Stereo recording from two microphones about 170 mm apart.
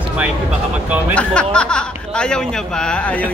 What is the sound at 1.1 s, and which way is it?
Speech, 5° left (ahead or behind).